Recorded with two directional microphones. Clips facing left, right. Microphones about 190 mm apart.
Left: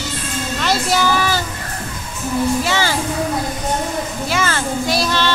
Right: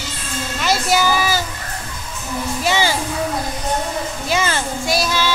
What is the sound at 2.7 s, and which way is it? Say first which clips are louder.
Speech: right 1 dB; 15° right (ahead or behind).